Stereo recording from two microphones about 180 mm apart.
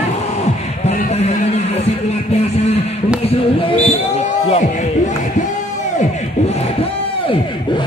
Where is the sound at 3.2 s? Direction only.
30° left (ahead or behind).